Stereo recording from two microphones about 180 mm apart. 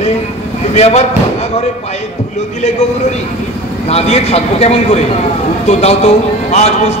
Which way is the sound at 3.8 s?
35° left (ahead or behind).